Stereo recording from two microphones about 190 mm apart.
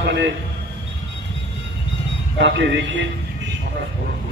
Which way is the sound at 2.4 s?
65° right (ahead or behind).